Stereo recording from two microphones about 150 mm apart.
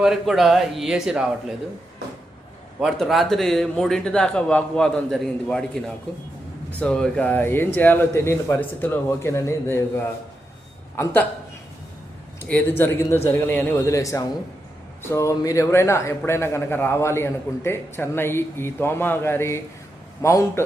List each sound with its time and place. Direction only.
0.0 s speech: centre (ahead or behind)
2.8 s a man's voice: centre (ahead or behind); by 9.8 s 15° left (ahead or behind)
10.9 s a man's voice: 15° left (ahead or behind)
12.4 s a man's voice: 15° left (ahead or behind)